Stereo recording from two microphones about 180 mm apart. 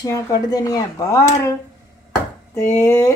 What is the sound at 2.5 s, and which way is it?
Speech, 15° left (ahead or behind).